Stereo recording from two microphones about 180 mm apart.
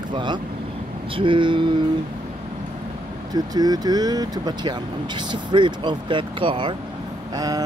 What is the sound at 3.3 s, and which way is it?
Speech, 20° right (ahead or behind).